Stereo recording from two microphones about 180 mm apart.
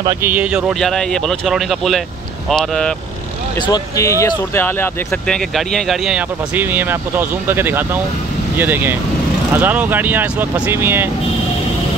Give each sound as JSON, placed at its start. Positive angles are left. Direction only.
{"t": 0.0, "sound": "speech", "side_deg": -10}
{"t": 3.6, "sound": "speech", "side_deg": 20}